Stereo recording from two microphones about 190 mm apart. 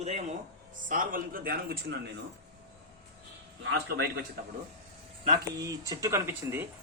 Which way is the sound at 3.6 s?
65° right (ahead or behind).